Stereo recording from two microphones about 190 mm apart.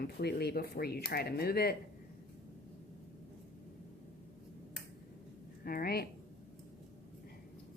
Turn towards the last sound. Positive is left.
turn(degrees=50)  # may be behind; listen again after turning